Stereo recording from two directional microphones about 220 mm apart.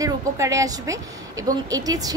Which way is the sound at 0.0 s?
15° right (ahead or behind).